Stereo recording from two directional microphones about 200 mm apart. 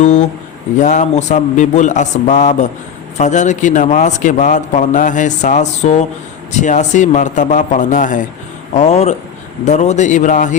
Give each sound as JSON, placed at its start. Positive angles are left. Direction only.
{"t": 0.0, "sound": "a man's voice", "side_deg": 35}